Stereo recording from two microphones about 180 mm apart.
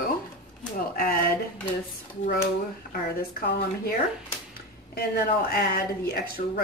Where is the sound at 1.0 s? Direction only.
55° left (ahead or behind).